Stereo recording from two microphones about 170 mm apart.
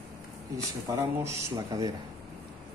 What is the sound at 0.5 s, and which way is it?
Speech, 20° right (ahead or behind).